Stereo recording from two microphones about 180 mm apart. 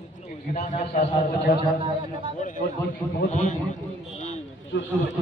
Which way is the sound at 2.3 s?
45° left (ahead or behind).